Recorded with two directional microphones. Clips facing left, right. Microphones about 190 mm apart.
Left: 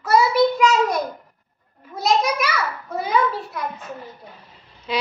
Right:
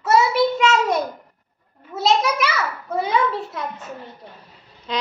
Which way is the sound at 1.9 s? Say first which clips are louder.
Right 1 dB; 25° right (ahead or behind).